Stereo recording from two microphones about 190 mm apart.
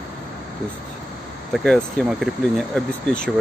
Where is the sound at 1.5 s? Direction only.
Centre (ahead or behind).